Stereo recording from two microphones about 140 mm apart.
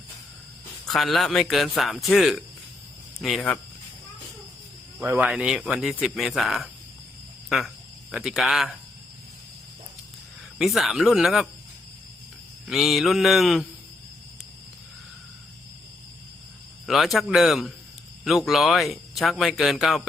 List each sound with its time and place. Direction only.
0.9 s speech: centre (ahead or behind)
4.9 s speech: 15° right (ahead or behind)
5.3 s speech: 5° right (ahead or behind)
8.1 s speech: centre (ahead or behind)
10.6 s speech: centre (ahead or behind)
12.6 s speech: centre (ahead or behind)
16.8 s speech: centre (ahead or behind)